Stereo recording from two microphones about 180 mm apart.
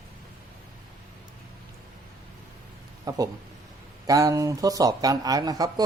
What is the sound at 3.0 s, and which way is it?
Speech, 20° right (ahead or behind).